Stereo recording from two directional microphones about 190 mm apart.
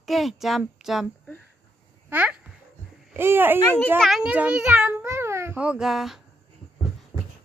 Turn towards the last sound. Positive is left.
turn(degrees=0)  # may be behind; listen again after turning